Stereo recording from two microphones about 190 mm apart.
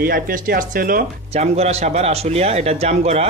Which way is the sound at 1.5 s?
35° right (ahead or behind).